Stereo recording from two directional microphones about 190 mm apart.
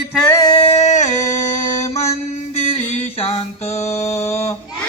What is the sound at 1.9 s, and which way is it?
Mantra, 35° left (ahead or behind).